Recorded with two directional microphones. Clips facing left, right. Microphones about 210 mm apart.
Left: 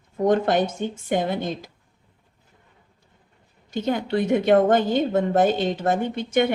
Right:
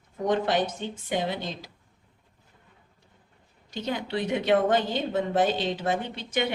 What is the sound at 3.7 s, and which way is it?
A woman's voice, 50° left (ahead or behind).